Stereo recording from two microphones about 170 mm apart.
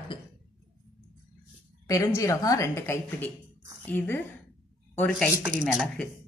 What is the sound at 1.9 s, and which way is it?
A woman's voice, 20° left (ahead or behind).